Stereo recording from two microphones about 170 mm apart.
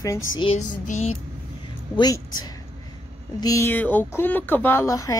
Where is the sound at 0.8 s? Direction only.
45° left (ahead or behind).